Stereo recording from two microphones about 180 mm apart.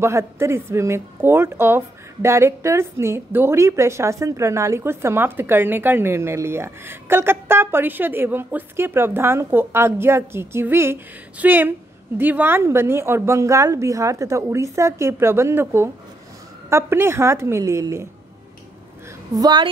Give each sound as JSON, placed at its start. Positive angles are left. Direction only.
{"t": 0.0, "sound": "speech", "side_deg": -15}
{"t": 19.3, "sound": "a woman's voice", "side_deg": -25}